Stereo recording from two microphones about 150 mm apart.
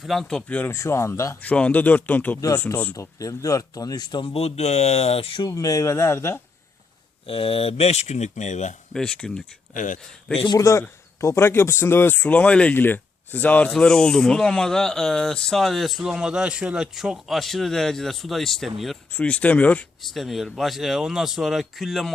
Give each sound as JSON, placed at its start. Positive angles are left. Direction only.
{"t": 0.0, "sound": "a man's voice", "side_deg": 0}
{"t": 5.5, "sound": "speech", "side_deg": 25}
{"t": 7.3, "sound": "speech", "side_deg": 40}
{"t": 8.9, "sound": "a man's voice", "side_deg": 5}
{"t": 9.7, "sound": "speech", "side_deg": 60}
{"t": 10.3, "sound": "a man's voice", "side_deg": 30}